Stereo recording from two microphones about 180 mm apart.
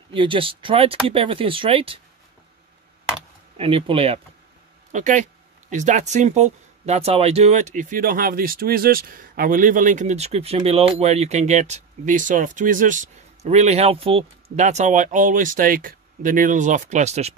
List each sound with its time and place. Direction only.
0.1 s speech: 30° right (ahead or behind)
3.5 s speech: 30° right (ahead or behind)
4.9 s speech: 45° right (ahead or behind)